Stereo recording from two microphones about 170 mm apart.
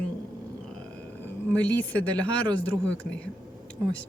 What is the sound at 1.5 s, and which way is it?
Speech, 10° left (ahead or behind).